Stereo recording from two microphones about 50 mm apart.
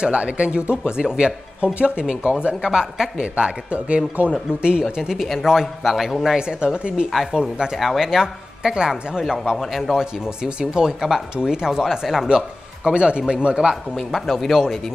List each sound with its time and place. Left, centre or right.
0.0 s speech: right; by 6.3 s centre
6.3 s speech: centre
9.6 s speech: centre
13.9 s speech: centre